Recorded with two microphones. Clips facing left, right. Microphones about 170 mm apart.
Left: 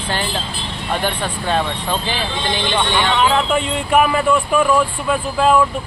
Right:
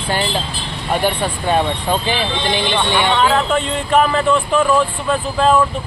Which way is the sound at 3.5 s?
10° left (ahead or behind).